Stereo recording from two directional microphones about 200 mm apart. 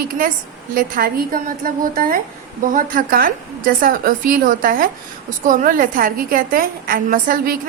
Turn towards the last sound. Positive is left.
turn(degrees=-45)  # may be behind; listen again after turning